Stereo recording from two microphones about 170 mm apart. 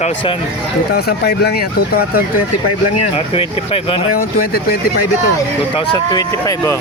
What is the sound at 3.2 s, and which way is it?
Speech, 35° left (ahead or behind).